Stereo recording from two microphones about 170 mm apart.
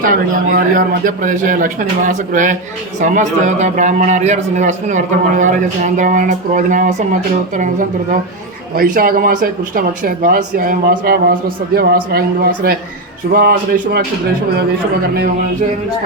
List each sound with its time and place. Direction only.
0.0 s a man's voice: 55° right (ahead or behind)